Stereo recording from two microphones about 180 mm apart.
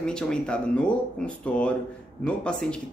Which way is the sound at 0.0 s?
5° left (ahead or behind).